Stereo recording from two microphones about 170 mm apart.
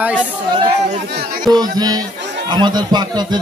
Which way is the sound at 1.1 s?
65° right (ahead or behind).